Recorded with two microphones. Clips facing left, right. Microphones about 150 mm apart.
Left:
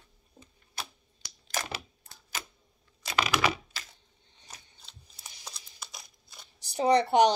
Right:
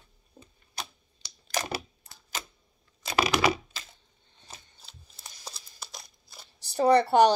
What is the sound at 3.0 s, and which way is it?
Computer keyboard, 35° right (ahead or behind).